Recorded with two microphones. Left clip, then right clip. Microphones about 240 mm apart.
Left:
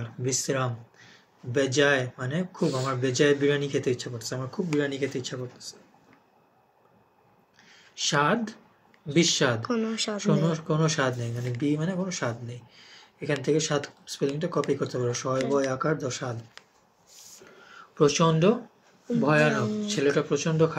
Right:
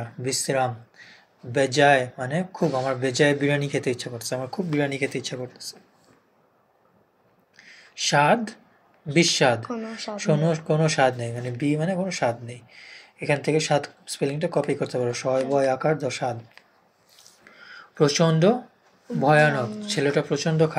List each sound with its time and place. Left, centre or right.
0.2 s speech: centre
7.5 s a sound: centre
9.1 s speech: centre
9.7 s speech: left
10.1 s speech: centre
17.6 s a sound: centre
19.2 s speech: centre